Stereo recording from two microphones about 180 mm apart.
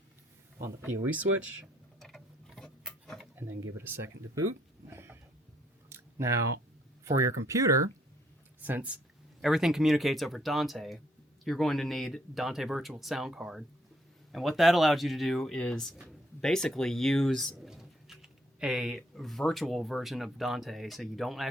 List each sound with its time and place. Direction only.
0.6 s speech: 10° right (ahead or behind)
2.0 s tick-tock: 5° left (ahead or behind)
3.4 s speech: 10° right (ahead or behind)
4.9 s a sound: 15° right (ahead or behind)
7.0 s speech: 15° right (ahead or behind); by 21.4 s centre (ahead or behind)